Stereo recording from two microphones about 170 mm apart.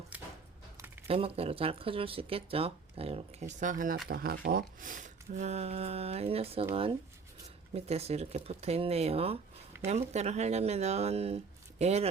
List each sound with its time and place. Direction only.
0.1 s a sound: 10° right (ahead or behind)
1.0 s speech: 35° right (ahead or behind)
3.5 s speech: 50° right (ahead or behind)
4.1 s speech: 60° right (ahead or behind); by 12.0 s 40° right (ahead or behind)